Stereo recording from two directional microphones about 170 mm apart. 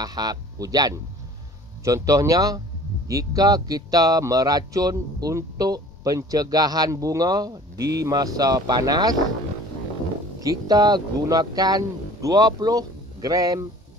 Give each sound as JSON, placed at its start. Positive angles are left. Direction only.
{"t": 0.0, "sound": "speech", "side_deg": -25}
{"t": 10.4, "sound": "speech", "side_deg": -20}